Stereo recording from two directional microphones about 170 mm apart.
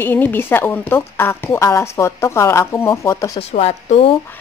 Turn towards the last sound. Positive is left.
turn(degrees=35)  # may be behind; listen again after turning